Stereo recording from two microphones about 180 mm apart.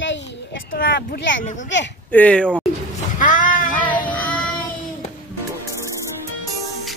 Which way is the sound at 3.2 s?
50° left (ahead or behind).